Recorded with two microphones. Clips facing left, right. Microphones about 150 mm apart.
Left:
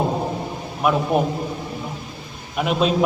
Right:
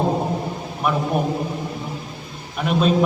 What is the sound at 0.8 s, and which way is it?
Speech, 5° left (ahead or behind).